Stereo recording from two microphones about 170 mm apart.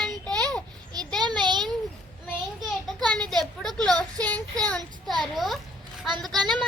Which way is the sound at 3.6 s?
5° left (ahead or behind).